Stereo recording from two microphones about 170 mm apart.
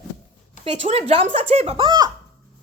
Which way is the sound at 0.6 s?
35° right (ahead or behind).